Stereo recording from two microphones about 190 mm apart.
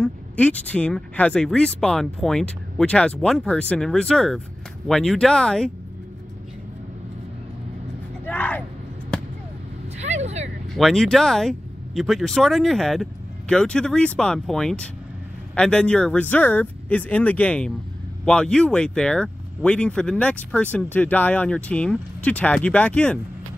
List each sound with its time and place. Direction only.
0.0 s speech: 5° left (ahead or behind)
8.3 s a sound: 10° left (ahead or behind)
9.9 s vehicle: 35° right (ahead or behind)
10.7 s speech: centre (ahead or behind)